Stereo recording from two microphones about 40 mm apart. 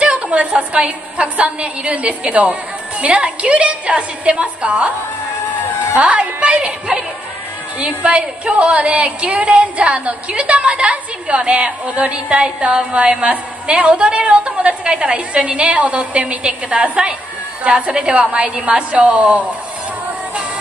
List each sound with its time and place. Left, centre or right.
0.0 s a woman's voice: right
5.9 s a woman's voice: right
8.0 s music: right
15.8 s a woman's voice: right
17.6 s music: right
19.1 s a woman's voice: right